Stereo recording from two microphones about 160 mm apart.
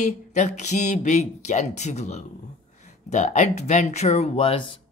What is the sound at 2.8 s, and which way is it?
Speech, 45° left (ahead or behind).